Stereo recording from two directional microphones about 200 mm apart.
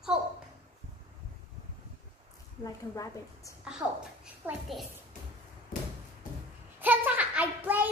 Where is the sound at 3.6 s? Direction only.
5° right (ahead or behind).